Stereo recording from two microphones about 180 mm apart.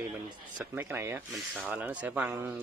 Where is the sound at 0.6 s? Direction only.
10° right (ahead or behind).